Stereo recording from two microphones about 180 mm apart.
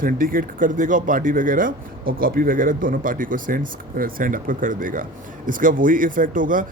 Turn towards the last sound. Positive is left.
turn(degrees=-50)  # may be behind; listen again after turning